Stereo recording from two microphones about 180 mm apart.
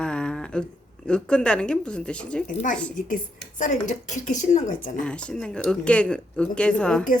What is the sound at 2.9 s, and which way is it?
Speech, 45° left (ahead or behind).